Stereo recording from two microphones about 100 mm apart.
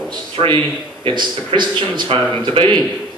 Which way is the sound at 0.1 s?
50° right (ahead or behind).